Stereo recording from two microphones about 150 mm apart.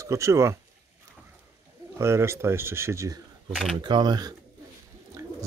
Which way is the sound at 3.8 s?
30° right (ahead or behind).